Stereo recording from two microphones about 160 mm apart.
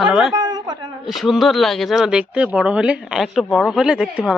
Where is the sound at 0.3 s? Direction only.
25° right (ahead or behind).